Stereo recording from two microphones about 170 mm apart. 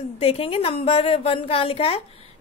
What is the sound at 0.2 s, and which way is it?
A woman's voice, 35° left (ahead or behind).